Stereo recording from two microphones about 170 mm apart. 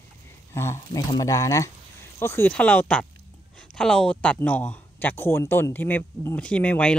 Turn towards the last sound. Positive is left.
turn(degrees=5)  # may be behind; listen again after turning